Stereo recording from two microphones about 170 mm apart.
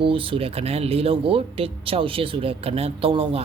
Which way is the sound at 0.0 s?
30° right (ahead or behind).